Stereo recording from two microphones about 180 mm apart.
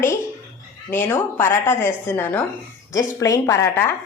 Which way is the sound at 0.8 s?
15° left (ahead or behind).